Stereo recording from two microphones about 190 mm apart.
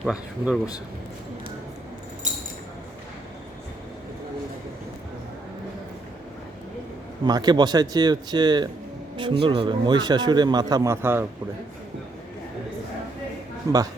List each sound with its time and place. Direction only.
0.0 s speech: centre (ahead or behind)
7.3 s a man's voice: 20° right (ahead or behind)
13.7 s speech: 15° right (ahead or behind)